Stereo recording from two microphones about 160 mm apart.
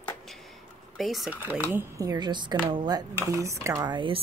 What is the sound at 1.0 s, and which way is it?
Speech, centre (ahead or behind).